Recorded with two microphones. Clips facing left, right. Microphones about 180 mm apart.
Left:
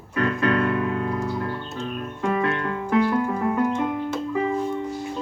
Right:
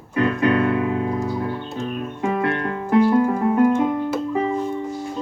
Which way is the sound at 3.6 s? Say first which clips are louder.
Right 6 dB; 10° right (ahead or behind).